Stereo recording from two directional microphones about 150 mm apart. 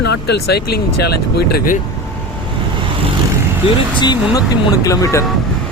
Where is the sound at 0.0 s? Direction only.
90° left.